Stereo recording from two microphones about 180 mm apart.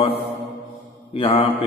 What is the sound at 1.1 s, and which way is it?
Speech, 30° left (ahead or behind).